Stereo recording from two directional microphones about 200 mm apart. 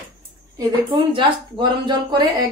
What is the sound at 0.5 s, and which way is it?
Speech, 20° right (ahead or behind).